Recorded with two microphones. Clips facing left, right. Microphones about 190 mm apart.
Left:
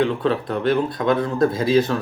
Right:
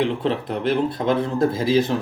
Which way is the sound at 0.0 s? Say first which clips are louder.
Left 2 dB; 25° right (ahead or behind).